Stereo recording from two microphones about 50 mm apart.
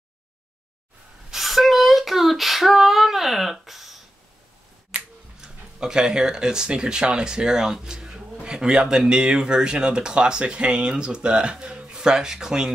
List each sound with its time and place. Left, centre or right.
1.3 s female singing: centre
4.9 s finger snapping: right
5.4 s speech: centre